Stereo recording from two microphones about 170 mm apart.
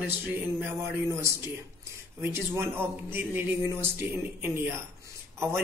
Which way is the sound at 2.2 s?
15° right (ahead or behind).